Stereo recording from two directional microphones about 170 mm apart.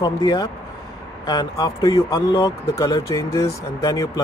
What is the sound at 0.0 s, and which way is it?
Speech, 25° left (ahead or behind).